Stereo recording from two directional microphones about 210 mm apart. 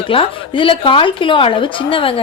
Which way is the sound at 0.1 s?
25° left (ahead or behind).